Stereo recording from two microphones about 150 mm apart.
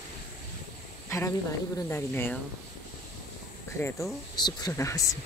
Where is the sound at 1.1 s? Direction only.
20° left (ahead or behind).